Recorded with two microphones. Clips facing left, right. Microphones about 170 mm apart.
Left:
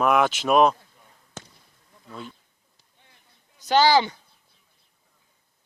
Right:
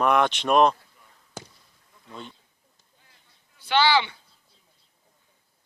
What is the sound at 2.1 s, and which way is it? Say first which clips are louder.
Speech: left 2 dB; 5° left (ahead or behind).